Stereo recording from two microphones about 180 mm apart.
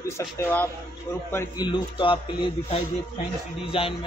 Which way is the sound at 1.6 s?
25° left (ahead or behind).